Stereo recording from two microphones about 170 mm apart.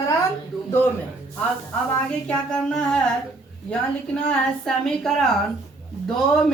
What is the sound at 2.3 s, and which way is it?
Speech, 5° left (ahead or behind).